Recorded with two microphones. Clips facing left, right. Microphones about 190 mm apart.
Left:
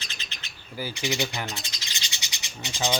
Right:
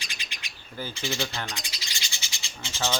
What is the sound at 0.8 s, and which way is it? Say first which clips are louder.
Bird: left 3 dB; 15° left (ahead or behind).